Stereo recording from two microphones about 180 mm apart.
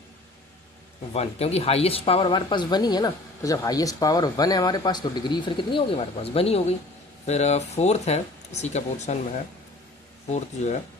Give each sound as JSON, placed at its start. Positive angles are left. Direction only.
{"t": 1.1, "sound": "speech", "side_deg": 35}
{"t": 10.3, "sound": "speech", "side_deg": 40}